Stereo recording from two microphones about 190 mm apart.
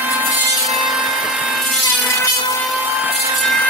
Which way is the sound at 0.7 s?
5° right (ahead or behind).